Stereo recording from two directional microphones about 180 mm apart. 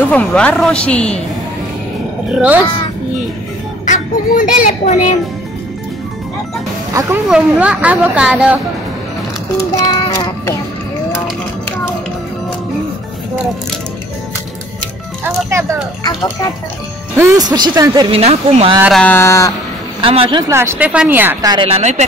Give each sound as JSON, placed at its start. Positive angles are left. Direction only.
{"t": 0.1, "sound": "a woman's voice", "side_deg": 5}
{"t": 2.3, "sound": "speech", "side_deg": -5}
{"t": 3.8, "sound": "music", "side_deg": 45}
{"t": 4.8, "sound": "a child's voice", "side_deg": 40}
{"t": 6.9, "sound": "speech", "side_deg": -20}
{"t": 7.2, "sound": "speech", "side_deg": -5}
{"t": 9.8, "sound": "music", "side_deg": 20}
{"t": 15.2, "sound": "speech", "side_deg": -15}
{"t": 17.2, "sound": "speech", "side_deg": -20}
{"t": 18.1, "sound": "speech", "side_deg": -35}
{"t": 18.8, "sound": "a woman's voice", "side_deg": 0}
{"t": 19.0, "sound": "a sound", "side_deg": 15}
{"t": 20.0, "sound": "speech", "side_deg": -30}
{"t": 20.5, "sound": "speech", "side_deg": -15}